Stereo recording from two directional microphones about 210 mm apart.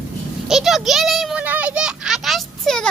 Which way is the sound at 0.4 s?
Centre (ahead or behind).